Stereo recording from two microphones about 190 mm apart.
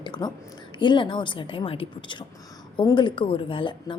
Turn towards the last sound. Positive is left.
turn(degrees=25)  # may be behind; listen again after turning